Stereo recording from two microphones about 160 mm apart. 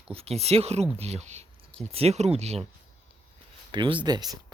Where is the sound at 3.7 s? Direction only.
30° right (ahead or behind).